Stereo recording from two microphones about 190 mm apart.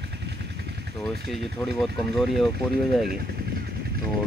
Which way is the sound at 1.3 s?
Centre (ahead or behind).